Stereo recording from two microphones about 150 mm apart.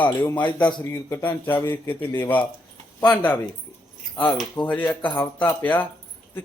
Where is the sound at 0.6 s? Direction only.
30° left (ahead or behind).